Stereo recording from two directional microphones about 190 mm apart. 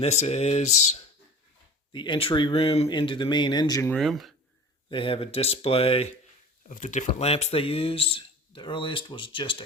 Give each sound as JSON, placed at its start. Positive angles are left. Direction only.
{"t": 0.0, "sound": "speech", "side_deg": 35}
{"t": 1.9, "sound": "speech", "side_deg": 25}
{"t": 3.9, "sound": "speech", "side_deg": 0}
{"t": 4.9, "sound": "speech", "side_deg": 25}
{"t": 6.7, "sound": "speech", "side_deg": 40}